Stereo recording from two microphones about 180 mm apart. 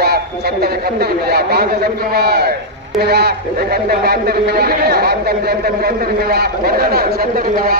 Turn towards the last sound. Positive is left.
turn(degrees=-55)  # may be behind; listen again after turning